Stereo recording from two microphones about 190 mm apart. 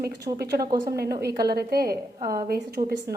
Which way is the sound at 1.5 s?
55° right (ahead or behind).